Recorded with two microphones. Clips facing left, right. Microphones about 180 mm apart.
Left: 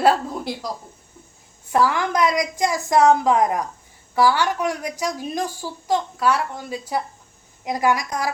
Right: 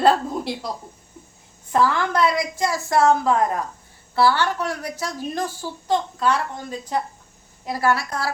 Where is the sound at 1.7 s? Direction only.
15° left (ahead or behind).